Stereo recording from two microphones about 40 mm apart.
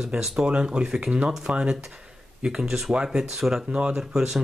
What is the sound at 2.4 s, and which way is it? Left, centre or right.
Speech, centre.